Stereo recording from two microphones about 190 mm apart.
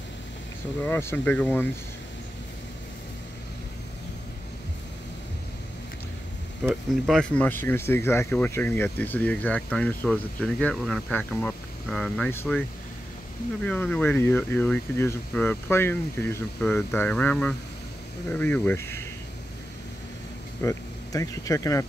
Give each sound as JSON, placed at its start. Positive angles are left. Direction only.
{"t": 0.8, "sound": "speech", "side_deg": 10}
{"t": 6.6, "sound": "speech", "side_deg": 0}
{"t": 13.7, "sound": "speech", "side_deg": 5}
{"t": 20.6, "sound": "speech", "side_deg": 15}